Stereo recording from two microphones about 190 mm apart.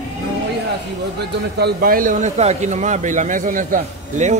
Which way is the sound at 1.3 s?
55° right (ahead or behind).